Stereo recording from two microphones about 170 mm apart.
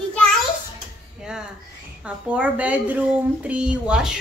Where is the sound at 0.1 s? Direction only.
5° left (ahead or behind).